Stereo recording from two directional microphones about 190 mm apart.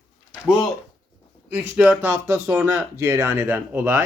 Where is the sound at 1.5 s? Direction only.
10° right (ahead or behind).